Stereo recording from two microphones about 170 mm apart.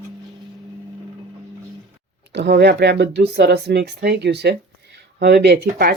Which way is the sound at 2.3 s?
85° right.